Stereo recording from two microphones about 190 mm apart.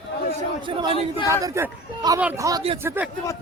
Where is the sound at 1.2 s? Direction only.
15° right (ahead or behind).